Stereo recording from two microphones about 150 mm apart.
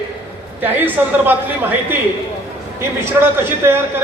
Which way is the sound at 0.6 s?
10° right (ahead or behind).